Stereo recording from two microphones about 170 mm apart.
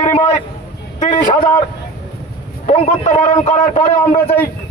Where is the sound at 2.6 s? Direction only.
40° left (ahead or behind).